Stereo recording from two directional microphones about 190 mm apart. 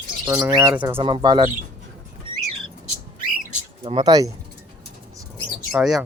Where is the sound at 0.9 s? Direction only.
25° right (ahead or behind).